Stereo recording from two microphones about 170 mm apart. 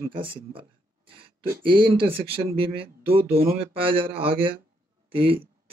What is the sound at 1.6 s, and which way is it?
Speech, 30° right (ahead or behind).